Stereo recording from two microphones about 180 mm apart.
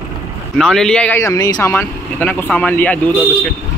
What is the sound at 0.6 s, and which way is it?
Speech, 5° left (ahead or behind).